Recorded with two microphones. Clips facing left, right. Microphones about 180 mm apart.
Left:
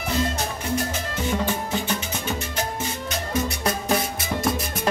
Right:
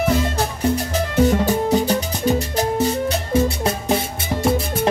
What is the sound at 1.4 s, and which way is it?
Music, 40° right (ahead or behind).